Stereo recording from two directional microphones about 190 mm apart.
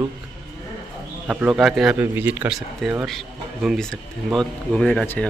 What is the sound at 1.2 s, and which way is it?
Speech, 5° right (ahead or behind).